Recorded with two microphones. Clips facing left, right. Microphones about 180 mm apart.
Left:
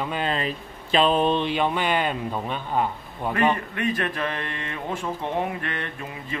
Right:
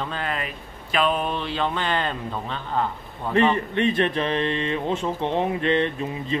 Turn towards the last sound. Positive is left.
turn(degrees=-20)  # may be behind; listen again after turning